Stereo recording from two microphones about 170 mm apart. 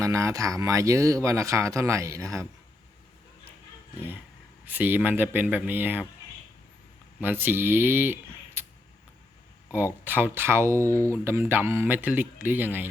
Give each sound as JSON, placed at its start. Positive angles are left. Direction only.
{"t": 0.0, "sound": "speech", "side_deg": -20}
{"t": 4.6, "sound": "speech", "side_deg": -10}
{"t": 7.2, "sound": "speech", "side_deg": -10}
{"t": 9.7, "sound": "speech", "side_deg": -10}
{"t": 10.8, "sound": "speech", "side_deg": 10}
{"t": 11.1, "sound": "speech", "side_deg": -15}